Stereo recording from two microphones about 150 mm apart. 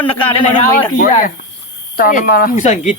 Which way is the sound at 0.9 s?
70° left (ahead or behind).